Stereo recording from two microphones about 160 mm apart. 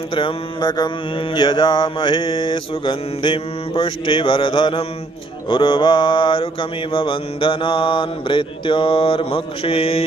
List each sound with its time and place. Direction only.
0.1 s mantra: 30° left (ahead or behind)